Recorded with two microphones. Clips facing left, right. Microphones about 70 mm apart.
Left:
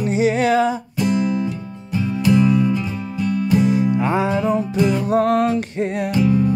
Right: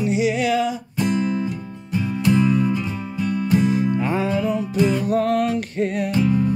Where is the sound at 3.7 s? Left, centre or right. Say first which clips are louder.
Left 3 dB; centre.